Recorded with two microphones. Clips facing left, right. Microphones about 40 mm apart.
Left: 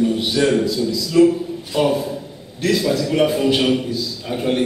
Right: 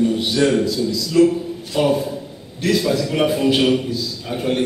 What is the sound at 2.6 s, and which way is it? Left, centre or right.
A man's voice, centre.